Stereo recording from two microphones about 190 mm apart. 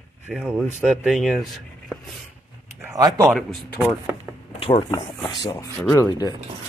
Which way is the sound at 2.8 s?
20° right (ahead or behind).